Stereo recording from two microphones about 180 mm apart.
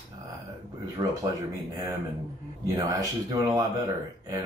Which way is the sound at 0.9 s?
20° right (ahead or behind).